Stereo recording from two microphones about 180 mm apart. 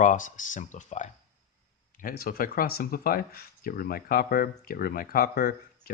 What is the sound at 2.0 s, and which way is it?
Speech, 55° left (ahead or behind).